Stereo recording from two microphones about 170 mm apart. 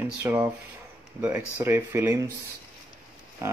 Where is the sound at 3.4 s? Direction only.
15° right (ahead or behind).